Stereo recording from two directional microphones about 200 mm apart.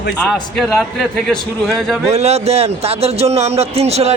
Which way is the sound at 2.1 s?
30° right (ahead or behind).